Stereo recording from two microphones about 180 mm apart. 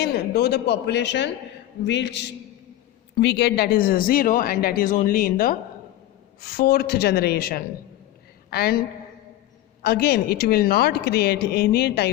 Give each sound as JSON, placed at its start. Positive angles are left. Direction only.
{"t": 0.0, "sound": "a woman's voice", "side_deg": 65}
{"t": 9.8, "sound": "speech", "side_deg": 60}